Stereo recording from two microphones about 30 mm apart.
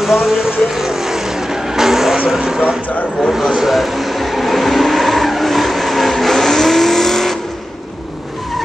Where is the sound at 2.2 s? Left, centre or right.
Centre.